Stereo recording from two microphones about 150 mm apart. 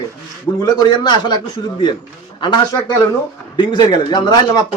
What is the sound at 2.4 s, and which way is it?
A man's voice, 30° left (ahead or behind).